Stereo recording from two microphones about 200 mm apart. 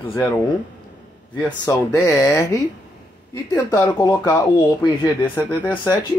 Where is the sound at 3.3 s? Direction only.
15° left (ahead or behind).